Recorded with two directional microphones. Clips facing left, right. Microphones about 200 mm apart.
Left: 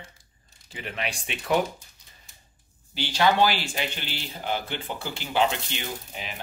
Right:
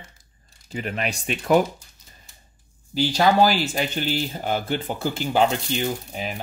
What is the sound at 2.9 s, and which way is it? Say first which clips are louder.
Speech: right 4 dB; 40° right (ahead or behind).